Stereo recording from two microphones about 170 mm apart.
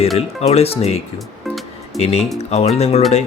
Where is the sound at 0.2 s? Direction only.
35° left (ahead or behind).